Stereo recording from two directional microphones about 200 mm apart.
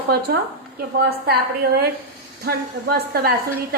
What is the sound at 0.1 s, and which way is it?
A woman's voice, 55° right (ahead or behind).